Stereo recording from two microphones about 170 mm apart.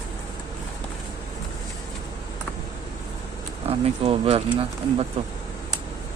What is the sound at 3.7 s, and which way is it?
Speech, 35° right (ahead or behind).